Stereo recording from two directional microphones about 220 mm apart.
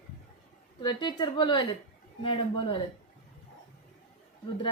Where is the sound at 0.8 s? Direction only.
20° left (ahead or behind).